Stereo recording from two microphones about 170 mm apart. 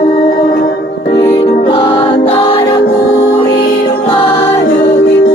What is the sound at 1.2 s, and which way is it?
Music, 15° left (ahead or behind).